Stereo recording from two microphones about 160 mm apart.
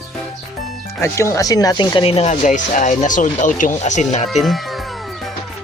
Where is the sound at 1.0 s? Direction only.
15° left (ahead or behind); by 4.2 s 45° left (ahead or behind).